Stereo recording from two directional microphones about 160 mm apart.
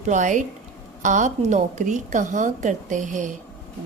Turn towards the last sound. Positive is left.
turn(degrees=-55)  # may be behind; listen again after turning